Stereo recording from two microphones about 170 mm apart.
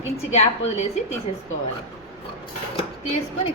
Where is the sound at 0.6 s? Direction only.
40° left (ahead or behind).